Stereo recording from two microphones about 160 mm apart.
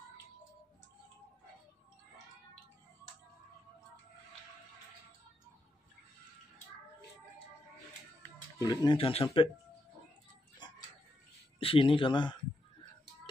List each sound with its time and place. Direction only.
8.2 s speech: 25° left (ahead or behind)
11.6 s speech: 35° left (ahead or behind)